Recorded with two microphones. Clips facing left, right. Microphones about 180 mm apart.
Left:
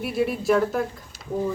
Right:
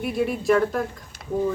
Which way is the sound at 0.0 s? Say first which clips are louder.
Even; centre (ahead or behind).